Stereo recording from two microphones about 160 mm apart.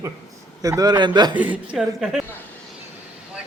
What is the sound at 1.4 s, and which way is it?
Speech, 5° right (ahead or behind).